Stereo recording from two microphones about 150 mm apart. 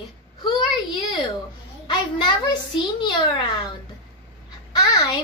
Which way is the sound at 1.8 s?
30° left (ahead or behind).